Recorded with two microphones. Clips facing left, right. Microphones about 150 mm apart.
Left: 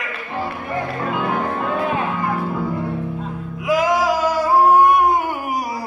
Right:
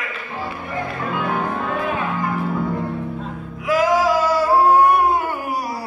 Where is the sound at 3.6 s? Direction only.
15° left (ahead or behind).